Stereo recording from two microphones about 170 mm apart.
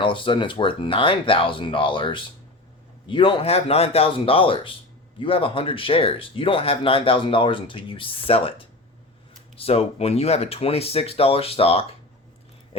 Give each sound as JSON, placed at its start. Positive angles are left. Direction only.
{"t": 0.0, "sound": "speech", "side_deg": 30}